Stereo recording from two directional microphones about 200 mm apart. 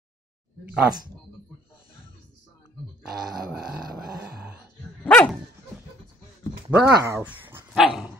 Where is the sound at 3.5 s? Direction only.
5° right (ahead or behind).